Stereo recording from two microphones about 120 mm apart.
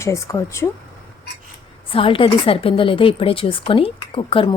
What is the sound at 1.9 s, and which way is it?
A woman's voice, 50° left (ahead or behind).